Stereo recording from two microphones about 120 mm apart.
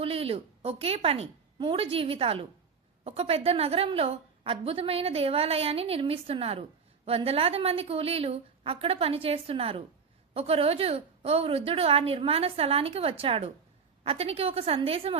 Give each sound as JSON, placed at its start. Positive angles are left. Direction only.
{"t": 0.0, "sound": "a woman's voice", "side_deg": -55}
{"t": 1.5, "sound": "a woman's voice", "side_deg": -45}